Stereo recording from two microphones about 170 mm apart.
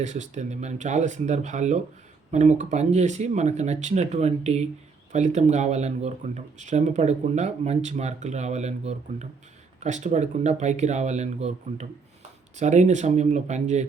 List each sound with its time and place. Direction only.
0.0 s speech: 45° right (ahead or behind)